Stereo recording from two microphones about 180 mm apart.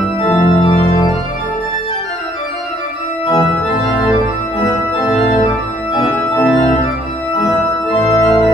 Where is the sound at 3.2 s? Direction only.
25° left (ahead or behind).